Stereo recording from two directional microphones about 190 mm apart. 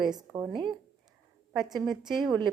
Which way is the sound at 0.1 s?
20° right (ahead or behind).